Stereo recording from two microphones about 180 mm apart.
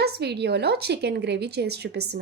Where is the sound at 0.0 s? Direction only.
65° right (ahead or behind).